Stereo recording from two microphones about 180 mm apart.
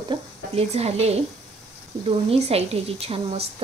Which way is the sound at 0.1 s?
35° right (ahead or behind).